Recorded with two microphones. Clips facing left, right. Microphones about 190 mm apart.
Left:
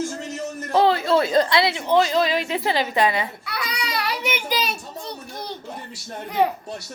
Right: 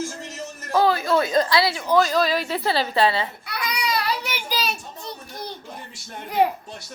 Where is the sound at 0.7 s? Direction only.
25° left (ahead or behind).